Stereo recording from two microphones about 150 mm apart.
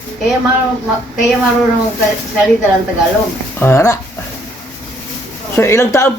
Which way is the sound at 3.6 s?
15° left (ahead or behind).